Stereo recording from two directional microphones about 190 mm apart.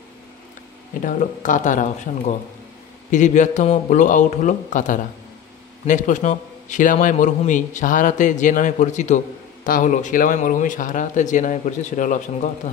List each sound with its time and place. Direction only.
1.0 s a man's voice: 40° left (ahead or behind)